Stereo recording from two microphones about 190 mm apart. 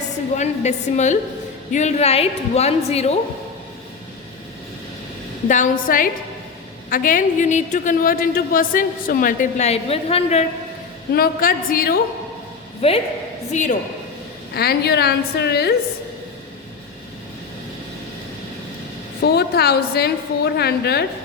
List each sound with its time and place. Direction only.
0.3 s a woman's voice: 40° left (ahead or behind)
5.5 s a woman's voice: 45° left (ahead or behind)
11.1 s a woman's voice: 50° left (ahead or behind)
12.8 s a woman's voice: 30° left (ahead or behind)
14.5 s a woman's voice: 55° left (ahead or behind)
19.2 s a woman's voice: 60° left (ahead or behind)